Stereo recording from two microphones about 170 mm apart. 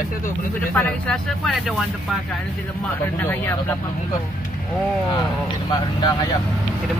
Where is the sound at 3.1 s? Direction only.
10° left (ahead or behind).